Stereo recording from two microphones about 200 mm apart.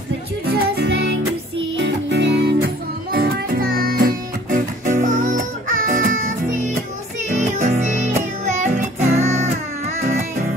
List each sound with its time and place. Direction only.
0.5 s music: 55° right (ahead or behind); by 9.5 s 35° right (ahead or behind)